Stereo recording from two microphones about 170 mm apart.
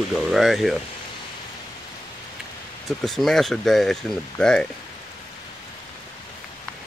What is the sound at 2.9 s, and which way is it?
Speech, centre (ahead or behind).